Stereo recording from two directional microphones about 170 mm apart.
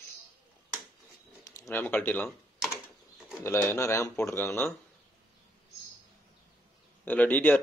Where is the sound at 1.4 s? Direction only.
20° left (ahead or behind).